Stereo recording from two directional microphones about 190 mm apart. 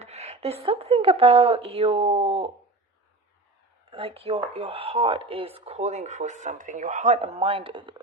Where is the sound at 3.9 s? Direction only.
30° right (ahead or behind).